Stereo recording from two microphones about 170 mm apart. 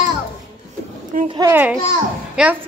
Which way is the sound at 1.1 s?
50° right (ahead or behind).